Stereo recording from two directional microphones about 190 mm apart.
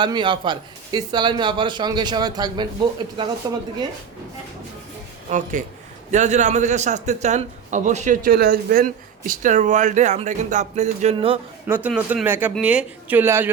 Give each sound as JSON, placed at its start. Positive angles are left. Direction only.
{"t": 0.0, "sound": "speech", "side_deg": -25}
{"t": 5.3, "sound": "a man's voice", "side_deg": -40}
{"t": 11.7, "sound": "speech", "side_deg": -10}